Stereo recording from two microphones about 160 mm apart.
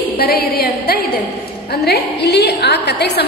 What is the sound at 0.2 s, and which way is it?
Speech, 80° left.